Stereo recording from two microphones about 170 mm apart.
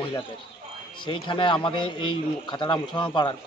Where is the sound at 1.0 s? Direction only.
30° left (ahead or behind).